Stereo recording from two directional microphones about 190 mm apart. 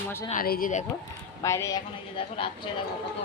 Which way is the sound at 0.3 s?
50° left (ahead or behind).